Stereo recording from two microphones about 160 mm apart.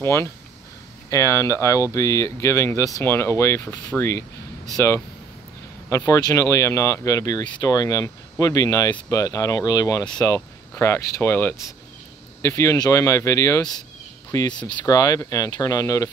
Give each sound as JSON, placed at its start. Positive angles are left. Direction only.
{"t": 0.0, "sound": "speech", "side_deg": 15}